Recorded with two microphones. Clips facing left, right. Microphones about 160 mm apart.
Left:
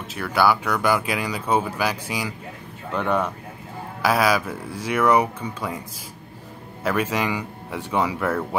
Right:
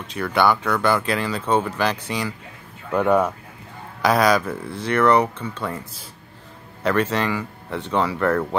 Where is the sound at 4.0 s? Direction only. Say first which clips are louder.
Right 2 dB; 5° left (ahead or behind).